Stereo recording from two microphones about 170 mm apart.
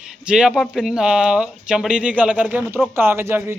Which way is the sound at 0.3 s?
5° right (ahead or behind).